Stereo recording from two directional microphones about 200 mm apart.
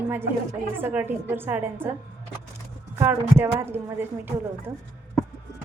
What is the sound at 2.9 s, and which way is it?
A woman's voice, 10° right (ahead or behind).